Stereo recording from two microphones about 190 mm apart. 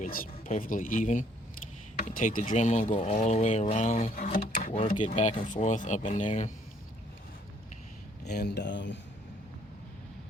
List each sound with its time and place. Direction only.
0.0 s a sound: 50° left (ahead or behind)
0.4 s speech: 40° left (ahead or behind)
8.2 s speech: 60° left (ahead or behind)